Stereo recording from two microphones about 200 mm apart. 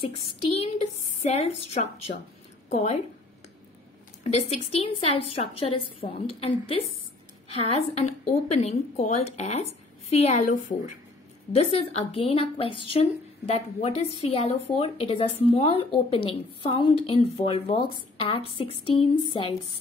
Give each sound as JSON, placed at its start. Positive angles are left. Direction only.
{"t": 0.0, "sound": "a woman's voice", "side_deg": 30}
{"t": 4.2, "sound": "a woman's voice", "side_deg": 35}
{"t": 18.1, "sound": "a sound", "side_deg": 25}
{"t": 18.6, "sound": "a woman's voice", "side_deg": 25}